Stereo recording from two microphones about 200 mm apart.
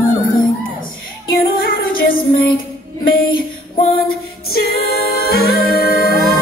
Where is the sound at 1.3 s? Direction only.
45° left (ahead or behind).